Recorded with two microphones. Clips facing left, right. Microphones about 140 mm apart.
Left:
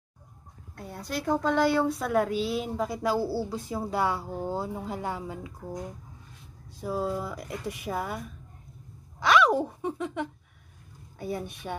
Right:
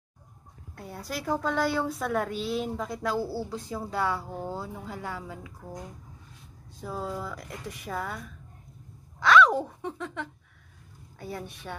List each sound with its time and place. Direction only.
0.7 s a woman's voice: 5° right (ahead or behind); by 5.5 s 20° left (ahead or behind)
6.8 s a woman's voice: 10° left (ahead or behind)
9.2 s a woman's voice: 15° left (ahead or behind)